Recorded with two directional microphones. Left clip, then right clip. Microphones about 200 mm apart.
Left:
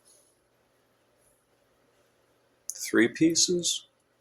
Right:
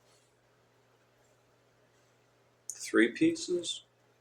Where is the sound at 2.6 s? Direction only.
55° left (ahead or behind).